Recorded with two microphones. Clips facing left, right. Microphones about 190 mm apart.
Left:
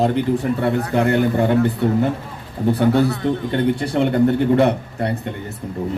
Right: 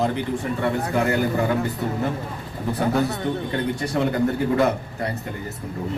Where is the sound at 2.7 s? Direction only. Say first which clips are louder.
Left 6 dB; 30° left (ahead or behind).